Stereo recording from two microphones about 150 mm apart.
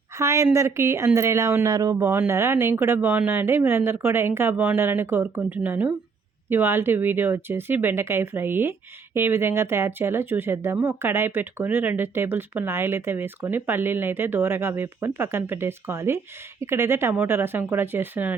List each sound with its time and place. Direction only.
0.2 s speech: 20° right (ahead or behind)